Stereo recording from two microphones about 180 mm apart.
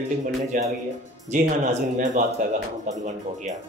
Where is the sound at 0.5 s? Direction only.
45° right (ahead or behind).